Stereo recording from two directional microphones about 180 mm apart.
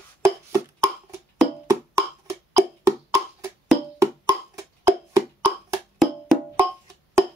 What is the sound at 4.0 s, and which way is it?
Music, 20° right (ahead or behind).